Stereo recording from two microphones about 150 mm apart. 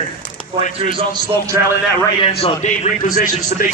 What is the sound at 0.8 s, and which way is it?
Speech, 35° right (ahead or behind).